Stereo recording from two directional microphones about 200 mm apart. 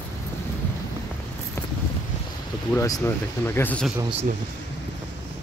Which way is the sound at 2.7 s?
15° left (ahead or behind).